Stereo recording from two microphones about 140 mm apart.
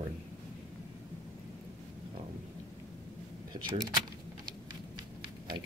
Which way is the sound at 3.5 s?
30° right (ahead or behind).